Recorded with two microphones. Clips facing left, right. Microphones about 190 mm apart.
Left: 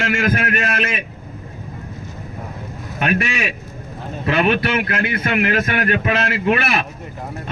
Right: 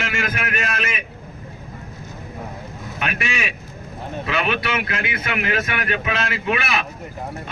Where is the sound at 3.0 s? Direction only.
40° left (ahead or behind).